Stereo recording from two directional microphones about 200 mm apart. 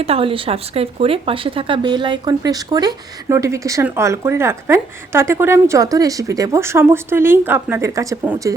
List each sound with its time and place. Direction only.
0.0 s speech: 30° right (ahead or behind); by 8.5 s 10° right (ahead or behind)